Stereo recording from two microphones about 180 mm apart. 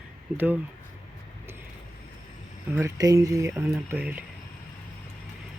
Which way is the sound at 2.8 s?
20° right (ahead or behind).